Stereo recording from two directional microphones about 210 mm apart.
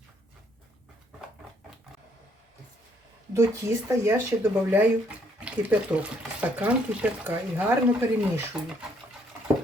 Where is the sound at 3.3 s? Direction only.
10° right (ahead or behind).